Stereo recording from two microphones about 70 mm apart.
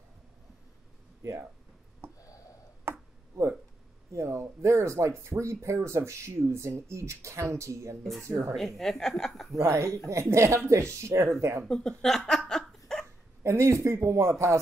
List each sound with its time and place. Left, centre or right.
2.1 s a sound: left
2.9 s a sound: right
4.1 s a woman's voice: right
8.5 s speech: centre
9.5 s speech: right
11.6 s speech: centre
12.0 s laughter: centre
13.4 s speech: right